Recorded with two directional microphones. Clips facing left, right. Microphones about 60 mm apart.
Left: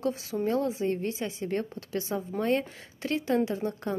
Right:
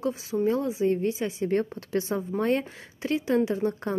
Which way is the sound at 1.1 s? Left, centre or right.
Right.